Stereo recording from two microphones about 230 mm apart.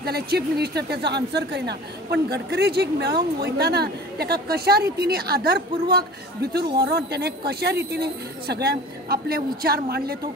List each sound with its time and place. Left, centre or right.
0.0 s speech: right